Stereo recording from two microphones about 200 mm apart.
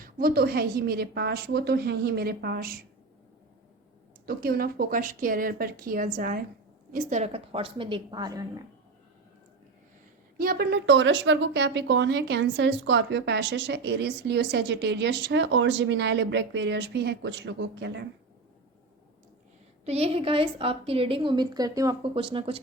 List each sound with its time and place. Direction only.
0.0 s a woman's voice: 50° right (ahead or behind)
4.3 s a woman's voice: 50° right (ahead or behind); by 8.6 s 20° right (ahead or behind)
10.3 s speech: 45° right (ahead or behind)
19.8 s a woman's voice: 30° right (ahead or behind)